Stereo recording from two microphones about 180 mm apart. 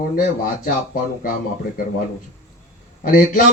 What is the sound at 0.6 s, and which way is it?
Speech, 50° left (ahead or behind).